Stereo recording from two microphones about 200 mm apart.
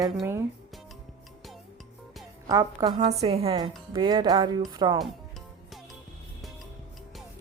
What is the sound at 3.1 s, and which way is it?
Speech, 30° right (ahead or behind).